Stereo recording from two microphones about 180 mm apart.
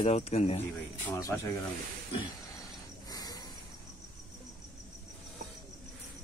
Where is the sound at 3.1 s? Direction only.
20° left (ahead or behind).